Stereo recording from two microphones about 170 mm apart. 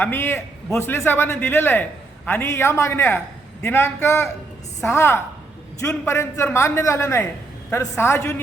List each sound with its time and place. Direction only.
0.0 s a man's voice: 15° left (ahead or behind)